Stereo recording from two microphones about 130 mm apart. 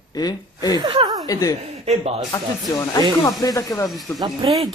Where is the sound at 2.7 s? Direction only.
25° left (ahead or behind).